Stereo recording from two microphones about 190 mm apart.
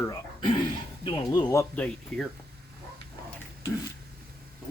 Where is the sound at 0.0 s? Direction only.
15° left (ahead or behind).